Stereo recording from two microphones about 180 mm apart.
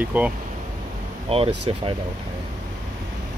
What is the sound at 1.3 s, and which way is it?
Speech, 35° right (ahead or behind).